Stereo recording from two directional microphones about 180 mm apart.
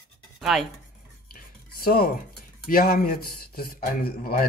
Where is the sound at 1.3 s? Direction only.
55° left (ahead or behind).